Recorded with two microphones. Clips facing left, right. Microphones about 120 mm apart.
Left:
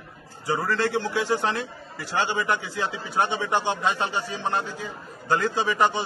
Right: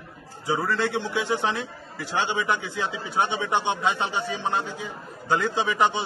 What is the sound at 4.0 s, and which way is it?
A man's voice, 20° right (ahead or behind).